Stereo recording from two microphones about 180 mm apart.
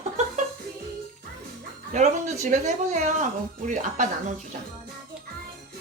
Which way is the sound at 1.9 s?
40° right (ahead or behind).